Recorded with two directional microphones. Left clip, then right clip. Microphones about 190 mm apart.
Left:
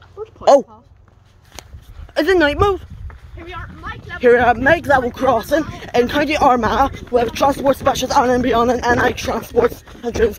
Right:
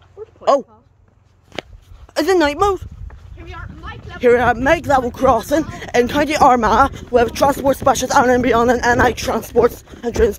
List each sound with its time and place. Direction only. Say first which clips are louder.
0.2 s dog: left 4 dB; 50° left (ahead or behind)
2.1 s a woman's voice: left 1 dB; 30° right (ahead or behind)
4.2 s speech: left 1 dB; 25° right (ahead or behind); by 10.3 s 45° right (ahead or behind)